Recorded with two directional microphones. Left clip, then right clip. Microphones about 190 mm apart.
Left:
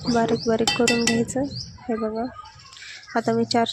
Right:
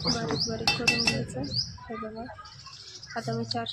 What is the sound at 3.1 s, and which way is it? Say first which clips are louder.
Speech: left 11 dB; 45° left (ahead or behind).